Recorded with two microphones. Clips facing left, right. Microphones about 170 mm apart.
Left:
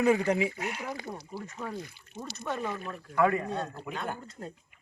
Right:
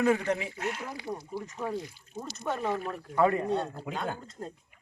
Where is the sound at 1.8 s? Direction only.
60° left (ahead or behind).